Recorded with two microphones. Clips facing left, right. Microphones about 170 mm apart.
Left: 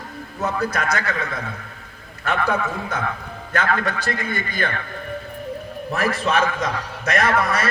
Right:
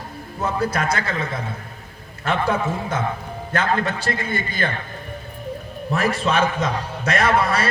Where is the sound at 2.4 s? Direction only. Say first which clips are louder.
Right 1 dB; 30° right (ahead or behind).